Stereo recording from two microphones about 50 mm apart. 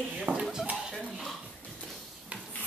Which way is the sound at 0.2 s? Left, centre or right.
Right.